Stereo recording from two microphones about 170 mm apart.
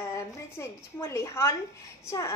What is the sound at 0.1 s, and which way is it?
A woman's voice, 15° left (ahead or behind).